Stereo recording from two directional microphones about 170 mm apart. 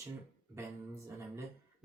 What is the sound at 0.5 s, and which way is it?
Speech, 15° right (ahead or behind).